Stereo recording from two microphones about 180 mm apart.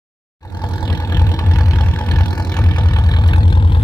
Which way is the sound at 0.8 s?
20° left (ahead or behind).